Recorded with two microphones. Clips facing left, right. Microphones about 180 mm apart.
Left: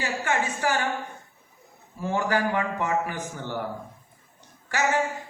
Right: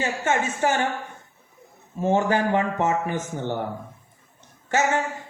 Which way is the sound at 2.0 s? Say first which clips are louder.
Right 4 dB; 25° right (ahead or behind).